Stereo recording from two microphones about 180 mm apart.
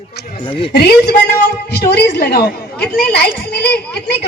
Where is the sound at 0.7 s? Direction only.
65° left (ahead or behind).